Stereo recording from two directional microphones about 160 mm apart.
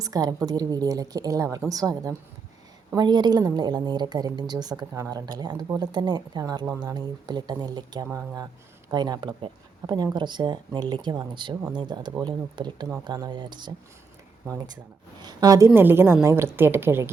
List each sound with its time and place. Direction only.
0.0 s a woman's voice: 25° right (ahead or behind)
8.0 s a woman's voice: 15° right (ahead or behind)
15.2 s a woman's voice: 25° right (ahead or behind)